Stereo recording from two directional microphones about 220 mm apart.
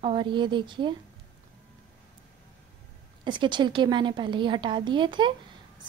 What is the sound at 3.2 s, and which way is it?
A woman's voice, 20° right (ahead or behind).